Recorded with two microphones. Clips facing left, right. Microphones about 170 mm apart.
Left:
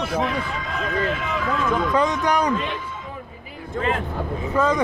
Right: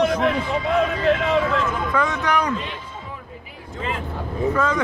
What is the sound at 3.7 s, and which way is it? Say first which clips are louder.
Speech: left 4 dB; 55° left (ahead or behind).